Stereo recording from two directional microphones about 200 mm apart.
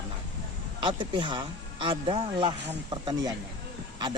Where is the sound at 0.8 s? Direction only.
25° right (ahead or behind).